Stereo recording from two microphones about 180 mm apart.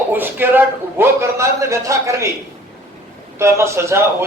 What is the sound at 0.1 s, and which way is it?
A man's voice, 10° right (ahead or behind).